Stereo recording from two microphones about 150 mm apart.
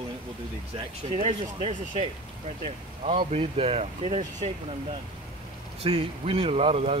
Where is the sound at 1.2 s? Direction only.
45° right (ahead or behind).